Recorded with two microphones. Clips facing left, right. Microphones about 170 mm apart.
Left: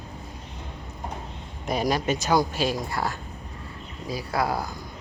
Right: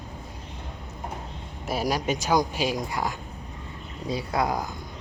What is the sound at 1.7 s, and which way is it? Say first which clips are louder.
Speech: left 2 dB; 10° right (ahead or behind).